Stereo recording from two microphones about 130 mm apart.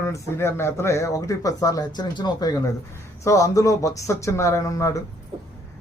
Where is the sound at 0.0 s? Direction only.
20° left (ahead or behind).